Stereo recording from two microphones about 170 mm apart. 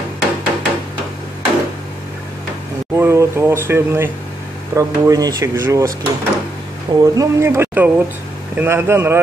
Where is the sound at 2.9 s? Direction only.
15° right (ahead or behind).